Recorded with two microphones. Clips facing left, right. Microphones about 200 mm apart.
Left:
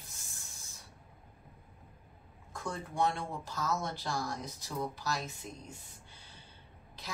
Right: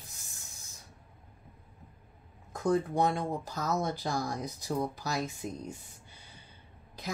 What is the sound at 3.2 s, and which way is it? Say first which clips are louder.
A woman's voice: right 4 dB; 40° right (ahead or behind).